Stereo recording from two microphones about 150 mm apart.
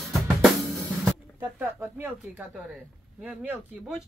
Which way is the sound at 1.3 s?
15° right (ahead or behind).